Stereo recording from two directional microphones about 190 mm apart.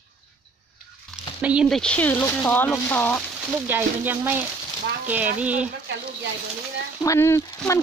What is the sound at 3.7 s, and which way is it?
Speech, 10° right (ahead or behind).